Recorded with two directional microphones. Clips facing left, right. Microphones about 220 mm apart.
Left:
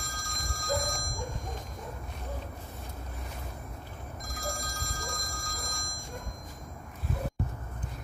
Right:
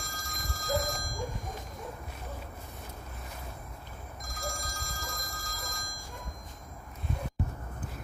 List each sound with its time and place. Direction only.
0.0 s telephone bell ringing: centre (ahead or behind)
4.2 s telephone bell ringing: centre (ahead or behind)